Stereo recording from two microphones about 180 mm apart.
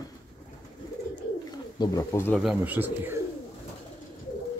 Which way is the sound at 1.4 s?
20° left (ahead or behind).